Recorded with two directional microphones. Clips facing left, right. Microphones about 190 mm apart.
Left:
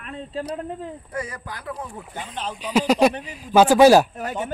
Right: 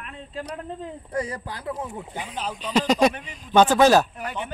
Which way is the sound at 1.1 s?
30° right (ahead or behind).